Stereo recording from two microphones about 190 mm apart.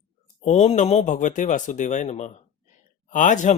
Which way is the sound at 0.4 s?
35° left (ahead or behind).